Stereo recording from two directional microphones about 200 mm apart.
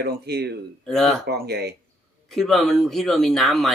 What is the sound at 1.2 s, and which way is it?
Speech, 55° right (ahead or behind).